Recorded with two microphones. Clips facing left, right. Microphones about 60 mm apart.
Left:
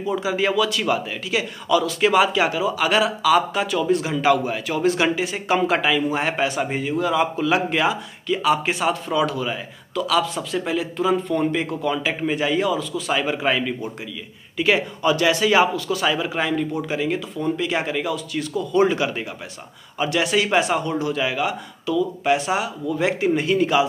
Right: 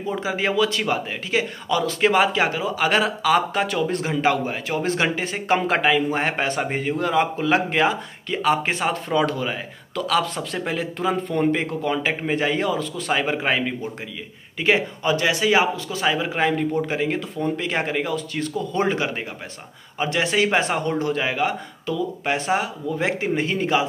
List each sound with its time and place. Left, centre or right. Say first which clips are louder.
0.0 s a man's voice: left 2 dB; right